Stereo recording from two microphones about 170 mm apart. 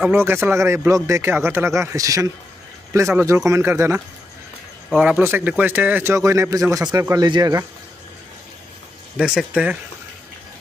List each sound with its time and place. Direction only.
0.1 s speech: 15° right (ahead or behind)
9.2 s speech: 5° right (ahead or behind)